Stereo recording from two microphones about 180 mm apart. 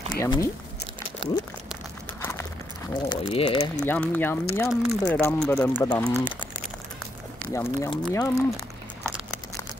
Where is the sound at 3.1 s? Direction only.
30° left (ahead or behind).